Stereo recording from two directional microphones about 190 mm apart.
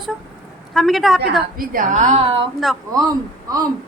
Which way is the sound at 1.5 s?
45° right (ahead or behind).